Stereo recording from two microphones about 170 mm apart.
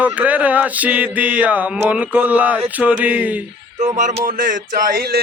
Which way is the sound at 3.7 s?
45° right (ahead or behind).